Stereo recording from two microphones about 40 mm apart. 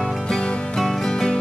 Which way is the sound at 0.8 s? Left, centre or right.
Centre.